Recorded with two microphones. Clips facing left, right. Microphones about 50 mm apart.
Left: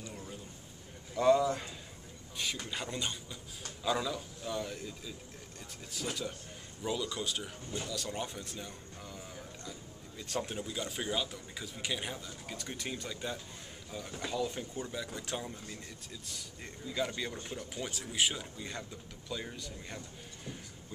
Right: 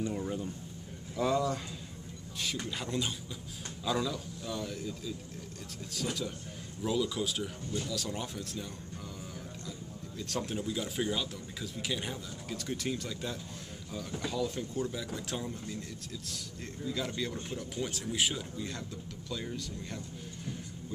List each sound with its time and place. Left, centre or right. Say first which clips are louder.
0.1 s a sound: right 10 dB; right
1.1 s a man's voice: left 3 dB; centre
9.7 s speech: right 4 dB; centre